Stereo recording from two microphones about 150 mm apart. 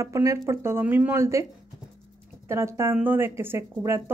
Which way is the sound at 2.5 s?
20° right (ahead or behind).